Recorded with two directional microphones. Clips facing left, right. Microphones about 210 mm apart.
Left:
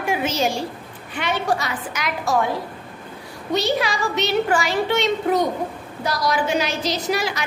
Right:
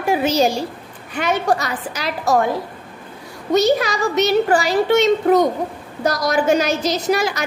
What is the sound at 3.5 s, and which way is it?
A woman's voice, 45° right (ahead or behind).